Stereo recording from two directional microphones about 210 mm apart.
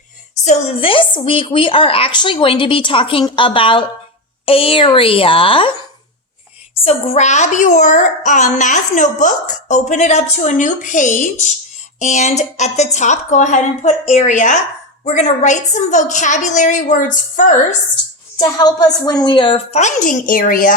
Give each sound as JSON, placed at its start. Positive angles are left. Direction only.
{"t": 0.4, "sound": "speech", "side_deg": 25}
{"t": 6.8, "sound": "a child's voice", "side_deg": 30}
{"t": 18.3, "sound": "speech", "side_deg": 20}